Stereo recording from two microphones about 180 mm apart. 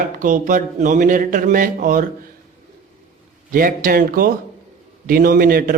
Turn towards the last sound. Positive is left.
turn(degrees=-50)  # may be behind; listen again after turning